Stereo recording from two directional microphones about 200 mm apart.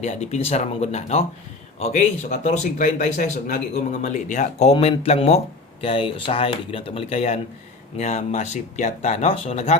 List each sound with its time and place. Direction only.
0.0 s speech: 35° left (ahead or behind)